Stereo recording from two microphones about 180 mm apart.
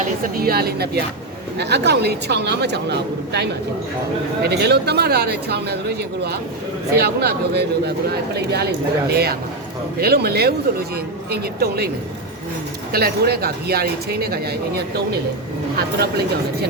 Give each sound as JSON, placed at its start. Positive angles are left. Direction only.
{"t": 0.0, "sound": "speech", "side_deg": -55}
{"t": 6.9, "sound": "speech", "side_deg": -60}
{"t": 12.9, "sound": "speech", "side_deg": -60}
{"t": 16.0, "sound": "speech", "side_deg": -60}